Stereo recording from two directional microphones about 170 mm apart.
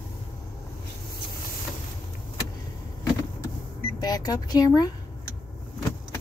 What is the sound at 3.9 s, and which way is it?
Speech, 20° left (ahead or behind).